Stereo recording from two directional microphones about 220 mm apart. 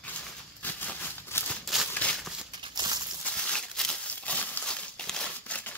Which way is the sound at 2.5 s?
20° right (ahead or behind).